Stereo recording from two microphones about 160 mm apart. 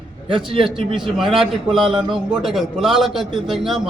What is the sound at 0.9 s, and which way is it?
Speech, centre (ahead or behind).